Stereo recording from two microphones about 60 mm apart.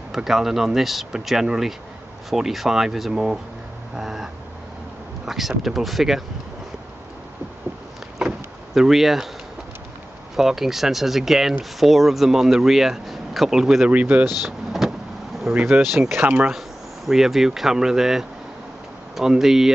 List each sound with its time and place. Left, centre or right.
0.1 s speech: centre
3.9 s vehicle: centre
5.2 s speech: centre
8.2 s vehicle: centre
10.3 s speech: centre
13.8 s speech: right
14.4 s vehicle: centre
15.5 s speech: centre
16.2 s speech: right
16.4 s speech: centre